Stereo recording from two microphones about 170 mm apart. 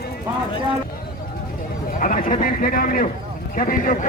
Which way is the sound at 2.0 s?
55° left (ahead or behind).